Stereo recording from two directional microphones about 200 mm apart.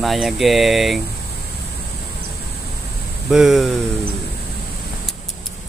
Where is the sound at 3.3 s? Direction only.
Centre (ahead or behind).